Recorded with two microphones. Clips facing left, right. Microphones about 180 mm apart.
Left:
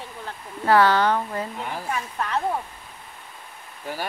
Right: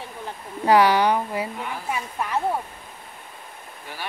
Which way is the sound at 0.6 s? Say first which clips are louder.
Right 1 dB; 15° right (ahead or behind).